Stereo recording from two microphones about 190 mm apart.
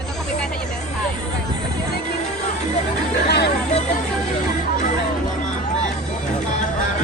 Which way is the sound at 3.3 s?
60° left (ahead or behind).